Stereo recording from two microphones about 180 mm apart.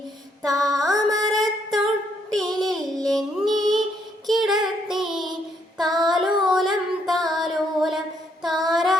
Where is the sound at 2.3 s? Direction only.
Centre (ahead or behind).